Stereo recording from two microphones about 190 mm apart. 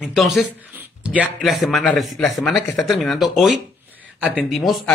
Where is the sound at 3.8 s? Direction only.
10° right (ahead or behind).